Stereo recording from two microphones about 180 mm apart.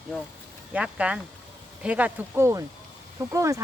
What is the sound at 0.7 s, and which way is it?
Speech, 5° right (ahead or behind).